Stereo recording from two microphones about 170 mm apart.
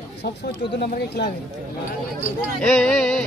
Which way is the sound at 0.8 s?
75° left (ahead or behind).